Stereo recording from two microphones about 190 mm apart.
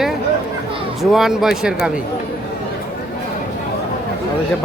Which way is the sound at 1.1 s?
Centre (ahead or behind).